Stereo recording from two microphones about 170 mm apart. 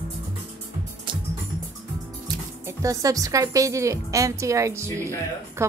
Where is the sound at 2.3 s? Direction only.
25° right (ahead or behind).